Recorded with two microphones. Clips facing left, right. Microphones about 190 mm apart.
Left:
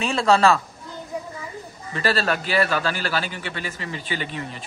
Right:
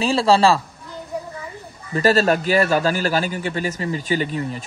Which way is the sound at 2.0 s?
40° right (ahead or behind).